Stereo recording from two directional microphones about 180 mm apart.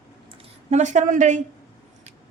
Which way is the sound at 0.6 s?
40° right (ahead or behind).